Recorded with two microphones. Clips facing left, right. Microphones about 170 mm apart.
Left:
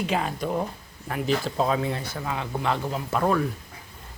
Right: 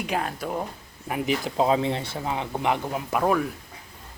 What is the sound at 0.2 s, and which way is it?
Speech, centre (ahead or behind).